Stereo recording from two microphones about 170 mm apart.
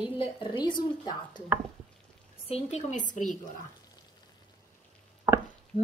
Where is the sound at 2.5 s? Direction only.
40° left (ahead or behind).